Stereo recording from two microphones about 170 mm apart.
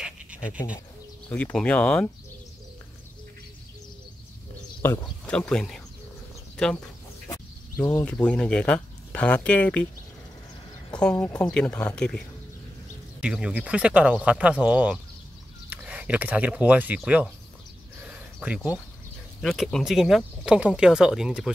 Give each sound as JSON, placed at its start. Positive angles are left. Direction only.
{"t": 1.3, "sound": "speech", "side_deg": 5}
{"t": 5.0, "sound": "speech", "side_deg": 5}
{"t": 7.2, "sound": "a sound", "side_deg": 20}
{"t": 8.3, "sound": "speech", "side_deg": 5}
{"t": 11.0, "sound": "speech", "side_deg": 5}
{"t": 13.2, "sound": "speech", "side_deg": -5}
{"t": 18.0, "sound": "a sound", "side_deg": -10}
{"t": 19.4, "sound": "speech", "side_deg": 0}